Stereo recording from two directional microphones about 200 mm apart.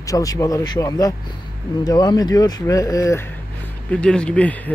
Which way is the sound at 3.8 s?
5° left (ahead or behind).